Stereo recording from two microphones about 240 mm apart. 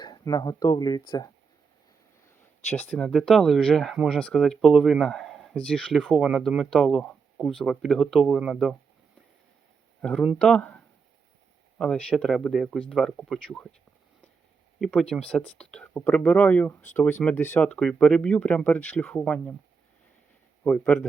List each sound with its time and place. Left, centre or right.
0.0 s speech: centre
2.6 s speech: centre
10.0 s speech: centre
14.8 s speech: centre
20.7 s speech: centre